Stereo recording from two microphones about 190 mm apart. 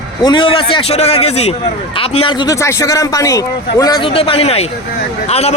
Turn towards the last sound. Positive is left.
turn(degrees=35)  # may be behind; listen again after turning